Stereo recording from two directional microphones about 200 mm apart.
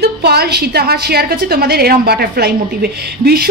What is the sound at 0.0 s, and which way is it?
A woman's voice, 55° right (ahead or behind).